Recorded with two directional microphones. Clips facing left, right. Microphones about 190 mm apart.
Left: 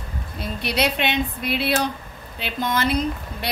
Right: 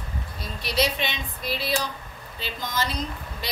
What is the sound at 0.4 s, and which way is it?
A woman's voice, 60° left (ahead or behind).